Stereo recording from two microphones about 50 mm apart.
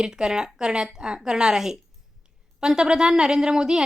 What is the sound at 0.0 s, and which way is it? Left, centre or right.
A woman's voice, centre.